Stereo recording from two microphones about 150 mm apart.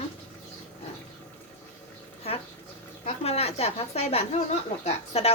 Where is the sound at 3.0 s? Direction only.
45° left (ahead or behind).